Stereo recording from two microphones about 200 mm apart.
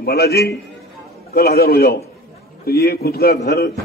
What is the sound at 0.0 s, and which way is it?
A man's voice, 55° left (ahead or behind).